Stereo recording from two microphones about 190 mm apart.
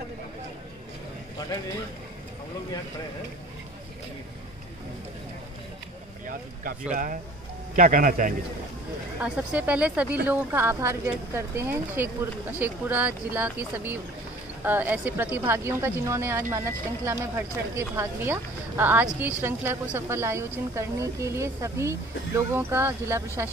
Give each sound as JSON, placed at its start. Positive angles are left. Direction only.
{"t": 6.2, "sound": "a man's voice", "side_deg": -45}
{"t": 9.2, "sound": "speech", "side_deg": -5}